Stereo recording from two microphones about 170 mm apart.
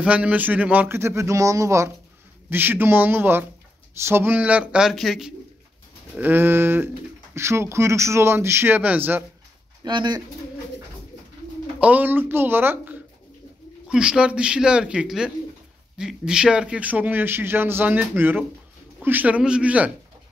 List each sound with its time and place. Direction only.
0.0 s speech: 5° right (ahead or behind)
9.8 s speech: 25° right (ahead or behind)
11.8 s a man's voice: 10° right (ahead or behind)